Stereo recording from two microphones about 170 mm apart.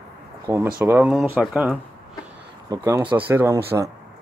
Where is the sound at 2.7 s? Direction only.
20° right (ahead or behind).